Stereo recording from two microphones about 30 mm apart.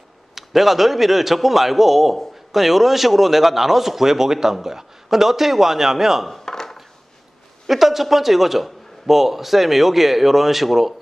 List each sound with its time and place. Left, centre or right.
0.3 s a man's voice: centre
6.4 s a sound: centre
7.6 s a man's voice: centre